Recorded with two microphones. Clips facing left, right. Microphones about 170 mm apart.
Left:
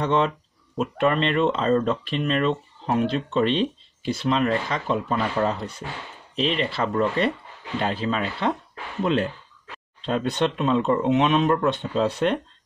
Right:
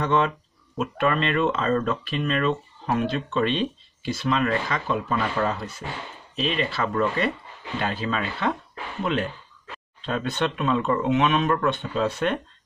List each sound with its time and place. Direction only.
0.0 s speech: 25° left (ahead or behind)
10.0 s speech: 30° left (ahead or behind)